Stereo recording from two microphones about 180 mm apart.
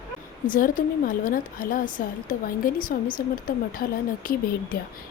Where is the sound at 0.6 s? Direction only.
50° left (ahead or behind).